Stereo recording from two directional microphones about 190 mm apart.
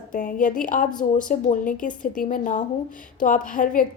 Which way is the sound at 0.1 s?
45° left (ahead or behind).